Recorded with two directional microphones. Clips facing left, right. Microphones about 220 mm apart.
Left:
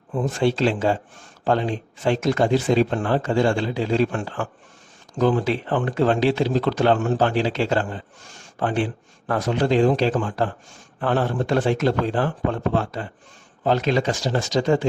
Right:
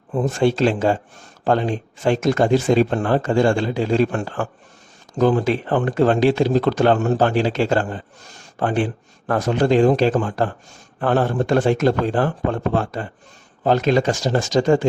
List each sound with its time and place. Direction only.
0.1 s speech: 40° right (ahead or behind)